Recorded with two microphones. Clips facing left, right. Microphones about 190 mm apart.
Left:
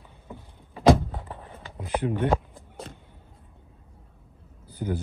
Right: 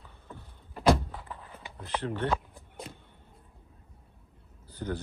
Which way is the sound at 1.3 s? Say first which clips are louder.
Left 4 dB; 60° left (ahead or behind).